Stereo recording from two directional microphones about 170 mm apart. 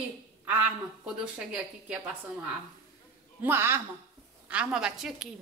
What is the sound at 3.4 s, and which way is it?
A woman's voice, 15° right (ahead or behind).